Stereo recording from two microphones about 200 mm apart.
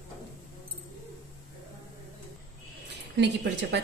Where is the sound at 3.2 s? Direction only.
60° right (ahead or behind).